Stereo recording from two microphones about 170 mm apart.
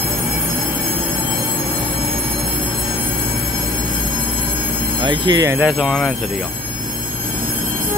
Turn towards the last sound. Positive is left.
turn(degrees=0)  # may be behind; listen again after turning